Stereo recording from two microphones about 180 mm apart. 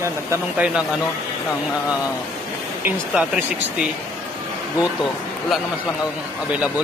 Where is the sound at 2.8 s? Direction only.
10° right (ahead or behind).